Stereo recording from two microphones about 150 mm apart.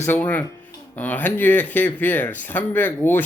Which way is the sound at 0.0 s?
10° left (ahead or behind).